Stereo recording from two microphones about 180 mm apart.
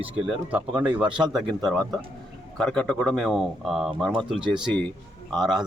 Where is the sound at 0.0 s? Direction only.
10° right (ahead or behind).